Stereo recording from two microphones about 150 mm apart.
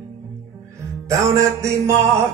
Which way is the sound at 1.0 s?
20° right (ahead or behind).